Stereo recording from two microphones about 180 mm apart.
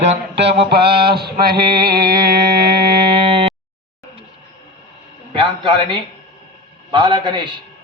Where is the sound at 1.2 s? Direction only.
60° right (ahead or behind).